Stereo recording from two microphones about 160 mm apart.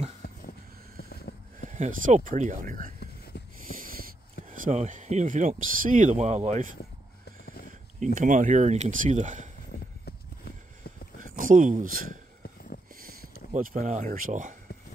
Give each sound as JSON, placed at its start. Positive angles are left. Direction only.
{"t": 1.7, "sound": "speech", "side_deg": -50}
{"t": 3.3, "sound": "a sound", "side_deg": 90}
{"t": 4.5, "sound": "speech", "side_deg": -45}
{"t": 8.0, "sound": "speech", "side_deg": -50}
{"t": 9.7, "sound": "a sound", "side_deg": 85}
{"t": 11.1, "sound": "speech", "side_deg": -55}
{"t": 13.0, "sound": "a sound", "side_deg": -60}
{"t": 13.7, "sound": "speech", "side_deg": -45}
{"t": 14.0, "sound": "speech", "side_deg": -65}